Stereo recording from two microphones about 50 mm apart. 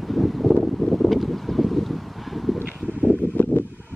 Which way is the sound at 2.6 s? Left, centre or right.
Left.